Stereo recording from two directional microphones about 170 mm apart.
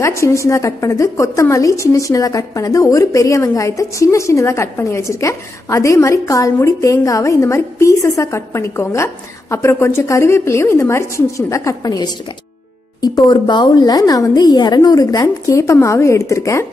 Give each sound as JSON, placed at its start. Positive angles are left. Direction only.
{"t": 0.0, "sound": "a woman's voice", "side_deg": 15}